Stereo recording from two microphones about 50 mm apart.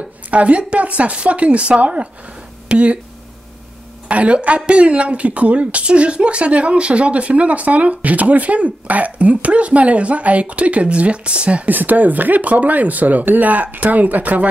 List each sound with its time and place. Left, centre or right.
0.3 s a woman's voice: right
4.1 s a woman's voice: right
11.7 s speech: right